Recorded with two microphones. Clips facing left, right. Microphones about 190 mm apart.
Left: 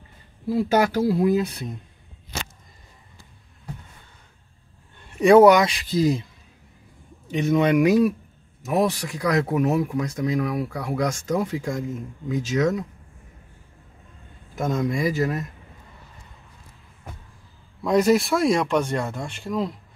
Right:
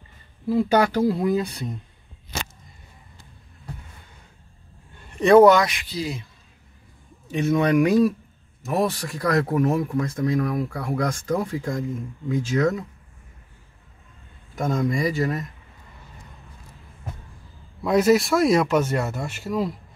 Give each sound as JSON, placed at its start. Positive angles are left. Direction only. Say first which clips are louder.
{"t": 0.5, "sound": "speech", "louder": "right 1 dB", "side_deg": 5}
{"t": 5.2, "sound": "speech", "louder": "even", "side_deg": 10}
{"t": 5.8, "sound": "speech", "louder": "left 8 dB", "side_deg": 45}
{"t": 7.3, "sound": "speech", "louder": "even", "side_deg": 15}
{"t": 14.5, "sound": "speech", "louder": "right 1 dB", "side_deg": 0}
{"t": 17.8, "sound": "speech", "louder": "right 1 dB", "side_deg": -5}